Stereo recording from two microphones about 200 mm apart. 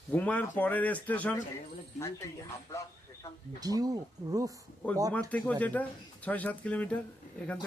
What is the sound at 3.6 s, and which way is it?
Speech, 20° right (ahead or behind).